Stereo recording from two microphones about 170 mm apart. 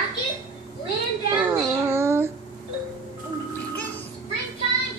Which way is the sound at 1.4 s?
15° right (ahead or behind).